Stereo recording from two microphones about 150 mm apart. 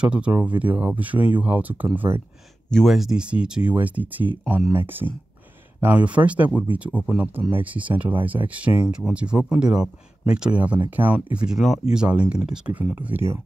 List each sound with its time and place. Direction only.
0.0 s speech: 10° right (ahead or behind)
2.7 s speech: centre (ahead or behind); by 13.4 s 15° right (ahead or behind)